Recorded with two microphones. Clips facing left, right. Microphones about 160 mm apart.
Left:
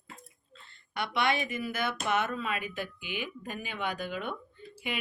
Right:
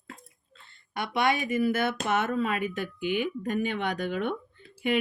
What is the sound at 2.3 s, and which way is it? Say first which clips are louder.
Speech: right 6 dB; 50° right (ahead or behind).